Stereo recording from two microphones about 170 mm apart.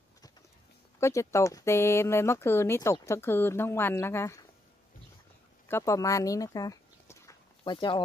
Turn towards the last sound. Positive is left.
turn(degrees=30)  # may be behind; listen again after turning